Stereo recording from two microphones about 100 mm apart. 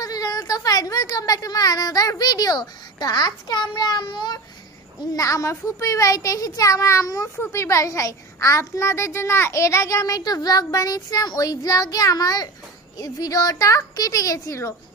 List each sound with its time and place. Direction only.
0.0 s speech: 40° left (ahead or behind)
5.1 s a child's voice: 35° left (ahead or behind)